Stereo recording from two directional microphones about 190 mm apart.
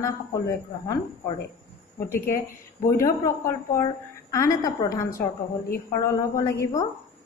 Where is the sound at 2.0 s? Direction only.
50° left (ahead or behind).